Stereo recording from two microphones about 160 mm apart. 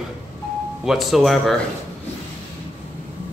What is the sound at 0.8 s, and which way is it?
Speech, centre (ahead or behind).